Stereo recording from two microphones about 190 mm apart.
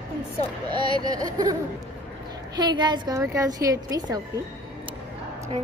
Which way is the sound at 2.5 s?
20° right (ahead or behind).